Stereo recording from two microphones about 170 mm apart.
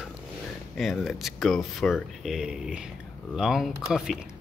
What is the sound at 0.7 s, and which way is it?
Speech, centre (ahead or behind).